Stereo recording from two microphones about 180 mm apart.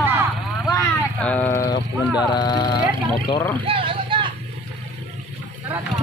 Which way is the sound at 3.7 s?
30° right (ahead or behind).